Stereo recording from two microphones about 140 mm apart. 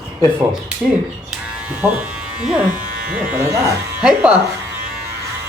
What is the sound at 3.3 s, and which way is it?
Music, 20° right (ahead or behind).